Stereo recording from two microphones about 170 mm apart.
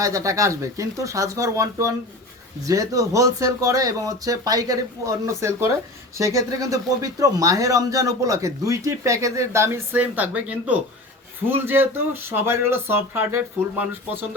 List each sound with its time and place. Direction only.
0.0 s speech: 20° right (ahead or behind)